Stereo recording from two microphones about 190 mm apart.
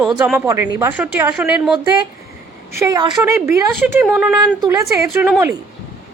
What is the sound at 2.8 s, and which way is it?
A woman's voice, 20° right (ahead or behind).